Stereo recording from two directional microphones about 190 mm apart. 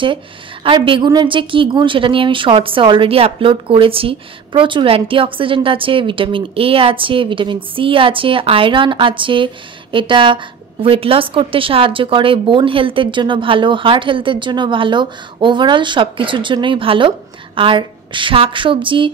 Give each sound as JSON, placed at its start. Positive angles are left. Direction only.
{"t": 0.7, "sound": "a woman's voice", "side_deg": -25}